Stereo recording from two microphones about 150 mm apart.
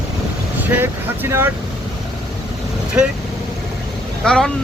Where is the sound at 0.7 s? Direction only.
15° right (ahead or behind).